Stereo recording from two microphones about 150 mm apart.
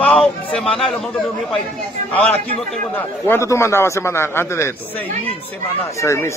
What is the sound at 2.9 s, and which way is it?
A man's voice, 15° left (ahead or behind).